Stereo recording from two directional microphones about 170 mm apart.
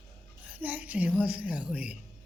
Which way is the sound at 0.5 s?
10° right (ahead or behind).